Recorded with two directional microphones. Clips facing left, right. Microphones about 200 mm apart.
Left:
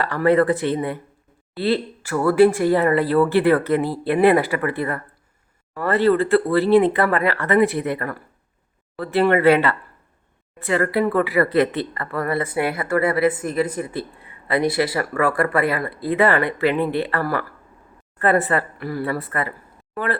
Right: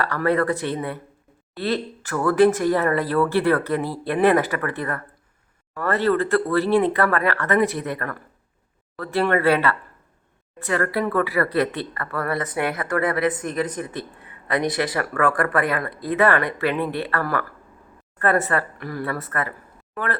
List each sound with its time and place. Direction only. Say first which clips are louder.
0.0 s a woman's voice: left 4 dB; 15° left (ahead or behind)